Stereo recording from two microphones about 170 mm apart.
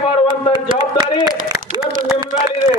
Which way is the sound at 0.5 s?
25° right (ahead or behind).